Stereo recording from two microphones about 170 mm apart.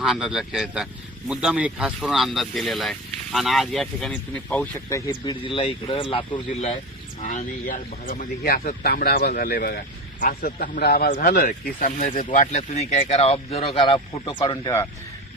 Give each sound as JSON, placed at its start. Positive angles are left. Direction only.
{"t": 0.0, "sound": "speech", "side_deg": -5}
{"t": 7.2, "sound": "speech", "side_deg": 50}